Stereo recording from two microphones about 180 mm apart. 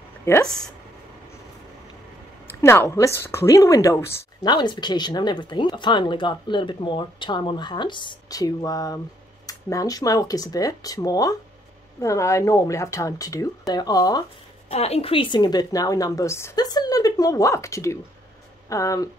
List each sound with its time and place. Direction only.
0.2 s speech: 15° left (ahead or behind)
2.6 s speech: 15° left (ahead or behind)
14.7 s speech: 35° left (ahead or behind); by 19.0 s 20° left (ahead or behind)